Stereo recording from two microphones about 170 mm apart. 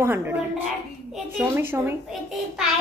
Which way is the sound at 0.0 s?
10° right (ahead or behind).